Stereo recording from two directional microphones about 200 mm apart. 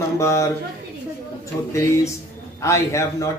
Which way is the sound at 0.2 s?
15° left (ahead or behind).